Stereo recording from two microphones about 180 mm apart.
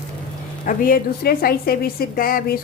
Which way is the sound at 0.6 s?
50° left (ahead or behind).